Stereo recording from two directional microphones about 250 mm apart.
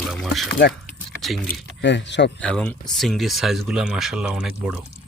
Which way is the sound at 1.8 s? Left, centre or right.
Left.